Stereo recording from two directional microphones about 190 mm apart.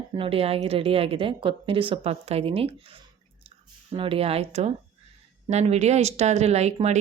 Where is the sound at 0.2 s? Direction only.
30° right (ahead or behind).